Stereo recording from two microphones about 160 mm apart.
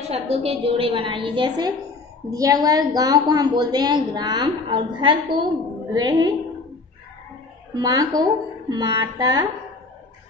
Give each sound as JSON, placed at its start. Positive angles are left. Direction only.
{"t": 0.1, "sound": "a woman's voice", "side_deg": -40}
{"t": 7.8, "sound": "a woman's voice", "side_deg": -25}